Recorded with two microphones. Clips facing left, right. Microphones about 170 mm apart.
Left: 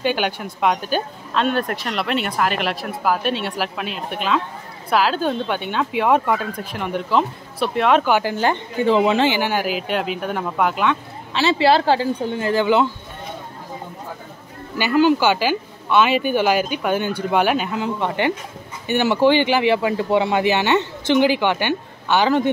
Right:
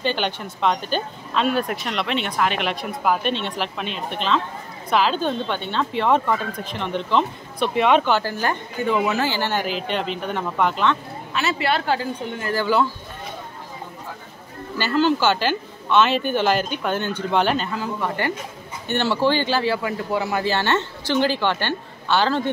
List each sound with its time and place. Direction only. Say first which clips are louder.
0.0 s speech: left 3 dB; 10° left (ahead or behind)
8.1 s speech: left 3 dB; 15° left (ahead or behind)
9.3 s speech: left 3 dB; 10° left (ahead or behind)
11.3 s speech: left 7 dB; 30° left (ahead or behind)
14.8 s speech: left 3 dB; 10° left (ahead or behind)
17.7 s speech: left 3 dB; 20° left (ahead or behind)